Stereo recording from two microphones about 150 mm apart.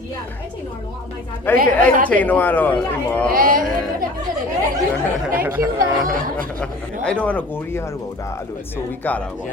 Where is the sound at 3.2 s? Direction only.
75° right (ahead or behind).